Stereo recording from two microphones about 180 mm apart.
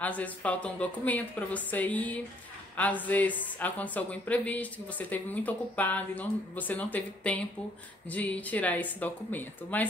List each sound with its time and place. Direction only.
0.0 s speech: 10° left (ahead or behind)